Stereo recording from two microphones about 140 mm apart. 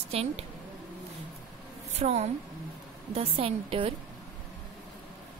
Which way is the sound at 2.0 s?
50° right (ahead or behind).